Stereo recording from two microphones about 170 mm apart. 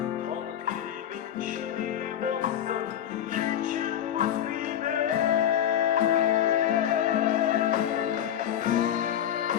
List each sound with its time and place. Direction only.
2.2 s music: 50° right (ahead or behind)